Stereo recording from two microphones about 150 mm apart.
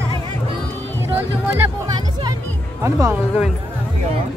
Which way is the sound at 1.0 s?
15° right (ahead or behind).